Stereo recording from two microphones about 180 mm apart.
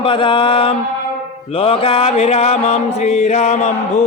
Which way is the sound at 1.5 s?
30° left (ahead or behind).